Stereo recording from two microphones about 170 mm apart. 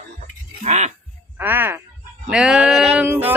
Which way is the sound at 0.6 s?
40° right (ahead or behind).